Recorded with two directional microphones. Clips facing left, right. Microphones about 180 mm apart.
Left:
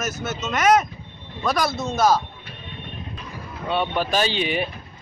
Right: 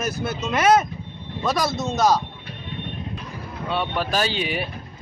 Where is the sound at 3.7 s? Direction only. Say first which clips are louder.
Left 2 dB; centre (ahead or behind).